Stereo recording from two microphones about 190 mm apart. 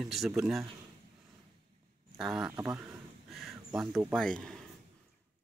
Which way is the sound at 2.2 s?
Centre (ahead or behind).